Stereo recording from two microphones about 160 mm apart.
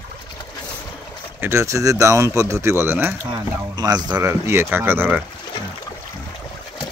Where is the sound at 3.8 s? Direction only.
25° right (ahead or behind).